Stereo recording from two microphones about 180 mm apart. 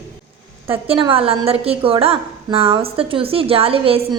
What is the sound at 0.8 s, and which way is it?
A woman's voice, 30° right (ahead or behind).